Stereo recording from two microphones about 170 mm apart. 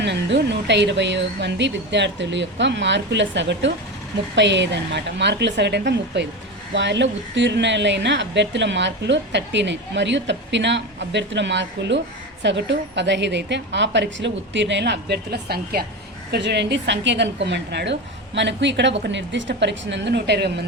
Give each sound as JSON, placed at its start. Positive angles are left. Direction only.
{"t": 0.0, "sound": "a woman's voice", "side_deg": -90}
{"t": 16.3, "sound": "a woman's voice", "side_deg": -85}